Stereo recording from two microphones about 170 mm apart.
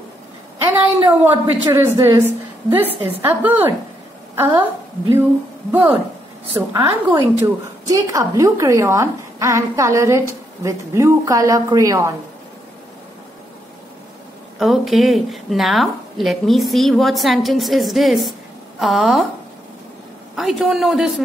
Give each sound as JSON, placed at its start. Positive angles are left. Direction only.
{"t": 0.9, "sound": "a woman's voice", "side_deg": -10}
{"t": 5.7, "sound": "a woman's voice", "side_deg": -10}
{"t": 14.6, "sound": "a woman's voice", "side_deg": 0}
{"t": 20.3, "sound": "a woman's voice", "side_deg": 0}